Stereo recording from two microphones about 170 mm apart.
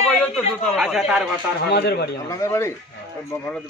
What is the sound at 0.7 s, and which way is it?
Speech, 5° right (ahead or behind).